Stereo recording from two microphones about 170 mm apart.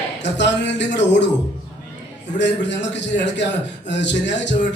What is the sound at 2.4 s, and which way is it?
A man's voice, 90° left.